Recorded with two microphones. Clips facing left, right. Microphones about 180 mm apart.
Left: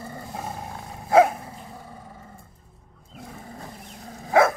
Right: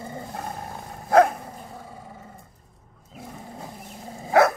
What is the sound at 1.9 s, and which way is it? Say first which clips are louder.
Roar: right 1 dB; 10° right (ahead or behind).